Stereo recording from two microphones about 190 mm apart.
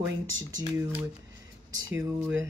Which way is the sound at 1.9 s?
10° right (ahead or behind).